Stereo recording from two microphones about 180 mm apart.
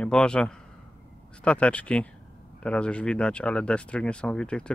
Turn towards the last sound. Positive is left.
turn(degrees=5)  # may be behind; listen again after turning